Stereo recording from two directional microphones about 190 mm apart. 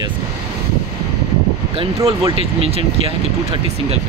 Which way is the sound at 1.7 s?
30° right (ahead or behind).